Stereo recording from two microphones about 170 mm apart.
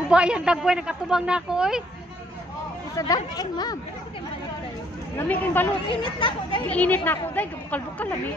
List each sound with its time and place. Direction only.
0.1 s speech: 5° right (ahead or behind)
3.0 s speech: 20° left (ahead or behind)
5.1 s speech: 10° left (ahead or behind)
5.9 s speech: 30° left (ahead or behind)
6.7 s speech: 10° left (ahead or behind)